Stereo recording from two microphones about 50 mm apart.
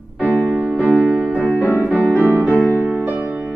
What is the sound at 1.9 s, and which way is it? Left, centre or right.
Music, left.